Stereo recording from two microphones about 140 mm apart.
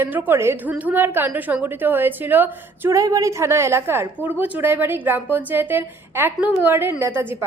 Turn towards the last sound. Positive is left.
turn(degrees=-15)  # may be behind; listen again after turning